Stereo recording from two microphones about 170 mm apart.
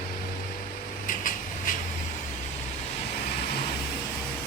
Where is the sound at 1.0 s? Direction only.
50° left (ahead or behind).